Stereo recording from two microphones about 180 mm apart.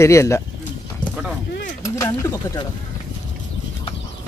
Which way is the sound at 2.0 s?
20° left (ahead or behind).